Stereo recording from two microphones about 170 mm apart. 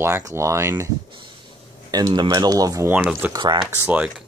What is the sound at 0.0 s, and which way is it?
Speech, 15° right (ahead or behind).